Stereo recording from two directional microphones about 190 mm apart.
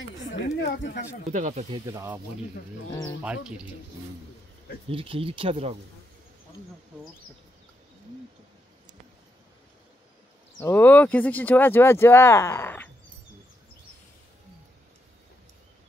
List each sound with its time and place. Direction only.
0.6 s speech: 65° left (ahead or behind)
1.3 s speech: 40° right (ahead or behind)
1.7 s speech: 15° right (ahead or behind)
3.2 s speech: 5° right (ahead or behind)
4.8 s speech: 30° right (ahead or behind)
10.6 s speech: 10° left (ahead or behind)